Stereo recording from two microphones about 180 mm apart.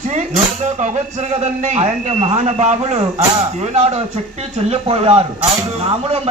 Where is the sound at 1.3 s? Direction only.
40° right (ahead or behind).